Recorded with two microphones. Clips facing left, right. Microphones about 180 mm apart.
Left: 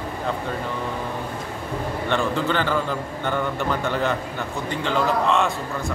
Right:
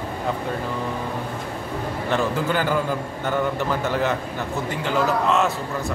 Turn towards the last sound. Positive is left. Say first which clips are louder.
# even
turn(degrees=-5)  # may be behind; listen again after turning